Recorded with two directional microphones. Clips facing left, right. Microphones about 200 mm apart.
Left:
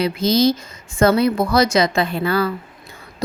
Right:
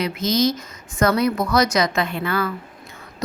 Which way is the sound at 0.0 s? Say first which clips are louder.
Left 4 dB; 30° left (ahead or behind).